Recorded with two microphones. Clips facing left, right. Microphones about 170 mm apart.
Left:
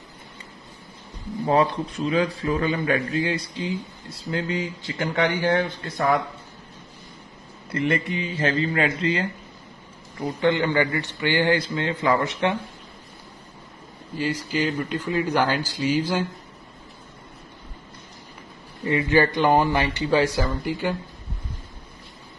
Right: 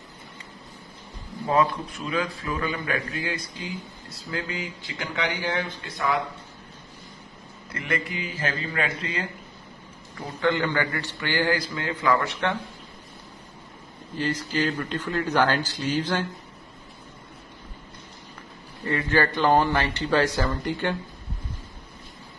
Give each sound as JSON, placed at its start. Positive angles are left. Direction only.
{"t": 1.5, "sound": "a man's voice", "side_deg": 30}
{"t": 4.9, "sound": "speech", "side_deg": 50}
{"t": 7.7, "sound": "a man's voice", "side_deg": 30}
{"t": 10.4, "sound": "a man's voice", "side_deg": 20}
{"t": 14.1, "sound": "a man's voice", "side_deg": 10}
{"t": 18.9, "sound": "a man's voice", "side_deg": 15}